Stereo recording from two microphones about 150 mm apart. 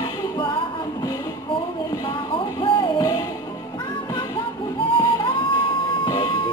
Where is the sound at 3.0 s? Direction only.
20° left (ahead or behind).